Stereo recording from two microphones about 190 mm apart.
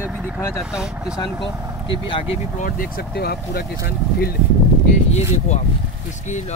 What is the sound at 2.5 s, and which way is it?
Speech, 45° left (ahead or behind).